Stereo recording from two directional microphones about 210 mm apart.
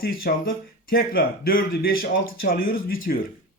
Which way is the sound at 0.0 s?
45° left (ahead or behind).